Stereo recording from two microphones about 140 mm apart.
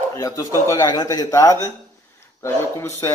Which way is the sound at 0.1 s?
20° left (ahead or behind).